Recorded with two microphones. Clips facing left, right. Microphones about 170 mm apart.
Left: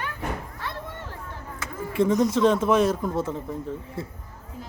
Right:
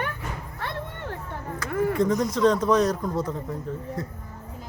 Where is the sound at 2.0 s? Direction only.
25° left (ahead or behind).